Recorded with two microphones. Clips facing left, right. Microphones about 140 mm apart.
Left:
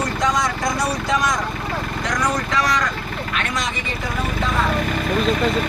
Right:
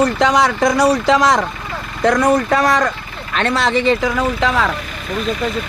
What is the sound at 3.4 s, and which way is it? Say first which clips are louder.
Speech: right 13 dB; 70° right (ahead or behind).